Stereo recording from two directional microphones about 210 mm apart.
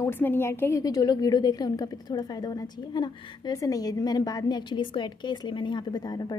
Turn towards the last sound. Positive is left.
turn(degrees=20)  # may be behind; listen again after turning